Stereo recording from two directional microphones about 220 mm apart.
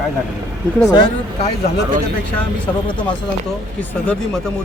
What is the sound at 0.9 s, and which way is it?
Speech, 20° left (ahead or behind).